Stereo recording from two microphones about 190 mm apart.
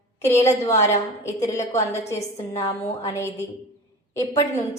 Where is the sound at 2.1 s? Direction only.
35° left (ahead or behind).